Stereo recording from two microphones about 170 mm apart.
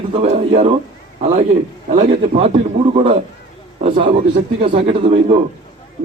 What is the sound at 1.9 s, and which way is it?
Speech, 40° right (ahead or behind).